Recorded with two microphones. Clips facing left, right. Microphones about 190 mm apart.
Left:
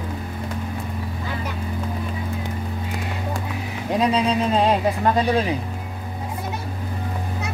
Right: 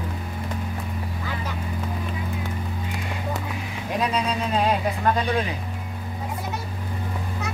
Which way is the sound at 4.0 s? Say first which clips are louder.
Left 5 dB; 25° left (ahead or behind).